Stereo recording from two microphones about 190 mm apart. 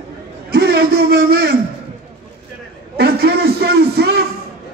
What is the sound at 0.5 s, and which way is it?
A man's voice, 60° right (ahead or behind).